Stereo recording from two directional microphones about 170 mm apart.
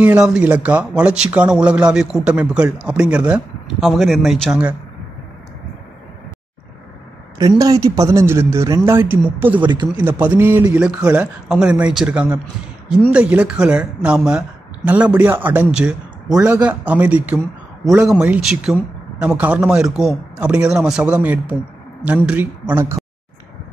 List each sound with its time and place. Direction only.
0.0 s speech: 5° right (ahead or behind)
7.3 s a man's voice: 20° right (ahead or behind)
9.6 s speech: 25° right (ahead or behind)
9.9 s a man's voice: 10° right (ahead or behind)